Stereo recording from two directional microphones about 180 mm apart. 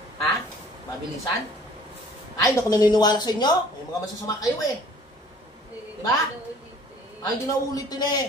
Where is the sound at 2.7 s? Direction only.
20° left (ahead or behind).